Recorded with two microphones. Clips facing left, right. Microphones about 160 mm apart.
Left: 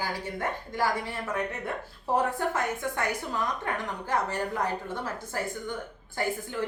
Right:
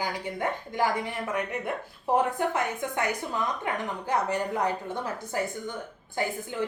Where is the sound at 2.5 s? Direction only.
15° right (ahead or behind).